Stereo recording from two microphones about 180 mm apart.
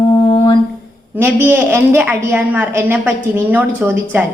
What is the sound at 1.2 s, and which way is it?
A woman's voice, 10° right (ahead or behind).